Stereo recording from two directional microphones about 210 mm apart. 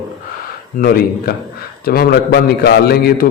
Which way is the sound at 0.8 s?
45° left (ahead or behind).